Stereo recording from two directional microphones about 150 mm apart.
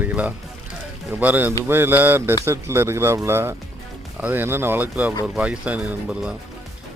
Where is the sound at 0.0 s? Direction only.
10° right (ahead or behind).